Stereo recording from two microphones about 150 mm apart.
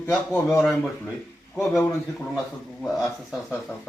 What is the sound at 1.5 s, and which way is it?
Speech, 5° left (ahead or behind).